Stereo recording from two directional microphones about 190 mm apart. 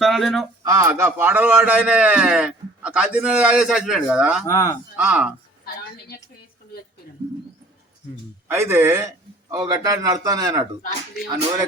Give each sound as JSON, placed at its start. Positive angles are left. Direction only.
{"t": 0.0, "sound": "speech", "side_deg": 0}
{"t": 0.6, "sound": "a man's voice", "side_deg": -15}
{"t": 4.4, "sound": "speech", "side_deg": 15}
{"t": 4.9, "sound": "speech", "side_deg": -5}
{"t": 8.4, "sound": "a man's voice", "side_deg": -15}